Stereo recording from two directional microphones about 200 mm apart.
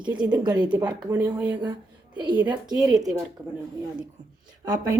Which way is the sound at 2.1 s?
25° right (ahead or behind).